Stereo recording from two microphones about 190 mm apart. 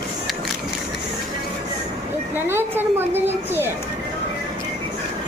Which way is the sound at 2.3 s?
10° right (ahead or behind).